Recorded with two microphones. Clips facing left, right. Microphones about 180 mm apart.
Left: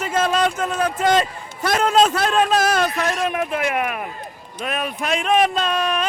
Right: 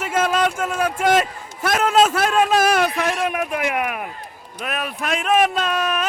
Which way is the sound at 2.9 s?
10° right (ahead or behind).